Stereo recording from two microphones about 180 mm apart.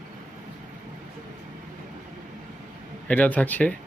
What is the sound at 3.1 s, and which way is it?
Speech, 10° left (ahead or behind).